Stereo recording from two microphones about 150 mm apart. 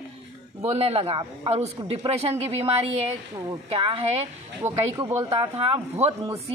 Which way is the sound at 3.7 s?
40° right (ahead or behind).